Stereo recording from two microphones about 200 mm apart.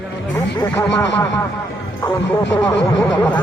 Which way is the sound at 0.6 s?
10° left (ahead or behind).